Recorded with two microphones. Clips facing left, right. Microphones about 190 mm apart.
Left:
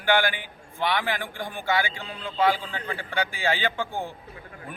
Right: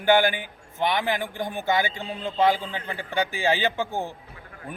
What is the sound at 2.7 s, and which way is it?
A man's voice, 20° right (ahead or behind).